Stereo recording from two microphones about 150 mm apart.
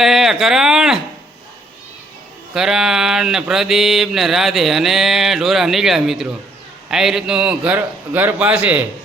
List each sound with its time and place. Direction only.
0.0 s mantra: centre (ahead or behind)
2.6 s mantra: 5° right (ahead or behind)
6.9 s a man's voice: 5° right (ahead or behind)